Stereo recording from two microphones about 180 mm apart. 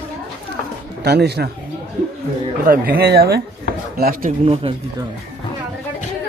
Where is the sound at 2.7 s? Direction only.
55° right (ahead or behind).